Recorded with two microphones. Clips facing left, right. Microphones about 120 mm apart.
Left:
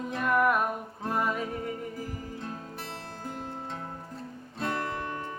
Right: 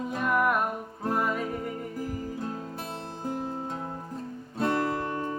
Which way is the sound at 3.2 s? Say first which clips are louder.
Right 7 dB; 40° right (ahead or behind).